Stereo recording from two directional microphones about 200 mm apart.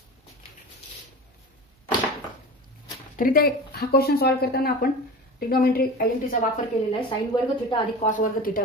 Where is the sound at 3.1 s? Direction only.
45° left (ahead or behind).